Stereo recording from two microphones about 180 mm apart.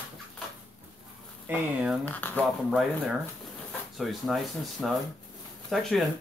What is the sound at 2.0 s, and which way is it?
Speech, 10° left (ahead or behind).